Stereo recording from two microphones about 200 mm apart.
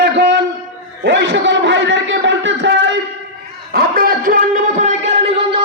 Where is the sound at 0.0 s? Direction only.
55° right (ahead or behind).